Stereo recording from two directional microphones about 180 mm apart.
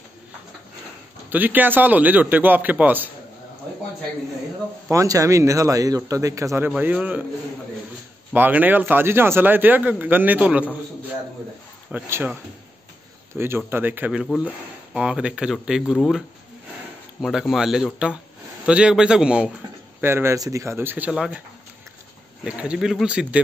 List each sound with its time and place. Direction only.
1.3 s a man's voice: 10° right (ahead or behind)
4.9 s a man's voice: 15° right (ahead or behind)
8.3 s a man's voice: 10° right (ahead or behind)
11.9 s a man's voice: 10° right (ahead or behind)
13.4 s a man's voice: 10° right (ahead or behind)
14.2 s a man's voice: centre (ahead or behind)
22.4 s speech: 5° right (ahead or behind)